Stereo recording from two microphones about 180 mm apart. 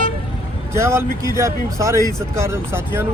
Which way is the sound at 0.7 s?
15° right (ahead or behind).